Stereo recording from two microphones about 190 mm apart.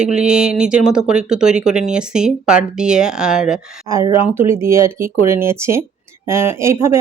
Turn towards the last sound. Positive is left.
turn(degrees=-15)  # may be behind; listen again after turning